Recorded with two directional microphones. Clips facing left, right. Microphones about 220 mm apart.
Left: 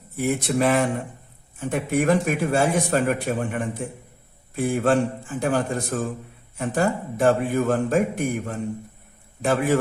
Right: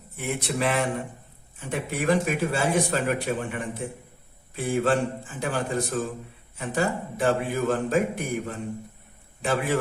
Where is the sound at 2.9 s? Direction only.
45° left (ahead or behind).